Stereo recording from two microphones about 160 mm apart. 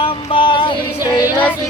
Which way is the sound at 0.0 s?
35° left (ahead or behind).